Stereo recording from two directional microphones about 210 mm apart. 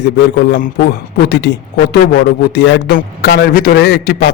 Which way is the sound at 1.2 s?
55° left (ahead or behind).